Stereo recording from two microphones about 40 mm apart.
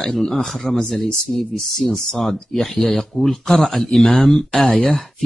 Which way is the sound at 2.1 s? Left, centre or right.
Centre.